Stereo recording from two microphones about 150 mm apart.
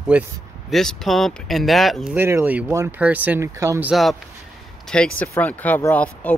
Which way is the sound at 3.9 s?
Centre (ahead or behind).